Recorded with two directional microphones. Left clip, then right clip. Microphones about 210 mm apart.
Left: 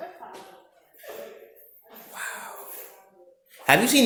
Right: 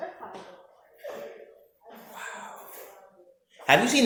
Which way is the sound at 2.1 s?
40° left (ahead or behind).